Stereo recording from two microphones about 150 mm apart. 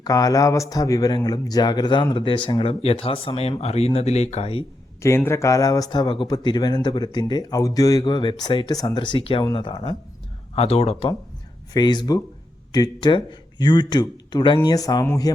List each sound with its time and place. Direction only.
0.0 s speech: 25° left (ahead or behind); by 4.6 s 40° left (ahead or behind)
5.0 s speech: 20° left (ahead or behind)
10.5 s speech: 45° left (ahead or behind)
11.7 s speech: 30° left (ahead or behind)